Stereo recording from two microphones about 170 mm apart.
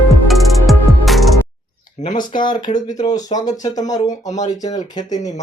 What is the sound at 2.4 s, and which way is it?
Speech, 25° left (ahead or behind).